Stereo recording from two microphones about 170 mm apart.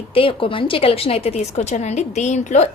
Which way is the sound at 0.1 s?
30° left (ahead or behind).